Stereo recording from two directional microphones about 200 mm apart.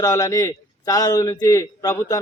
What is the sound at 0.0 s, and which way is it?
A man's voice, 15° left (ahead or behind).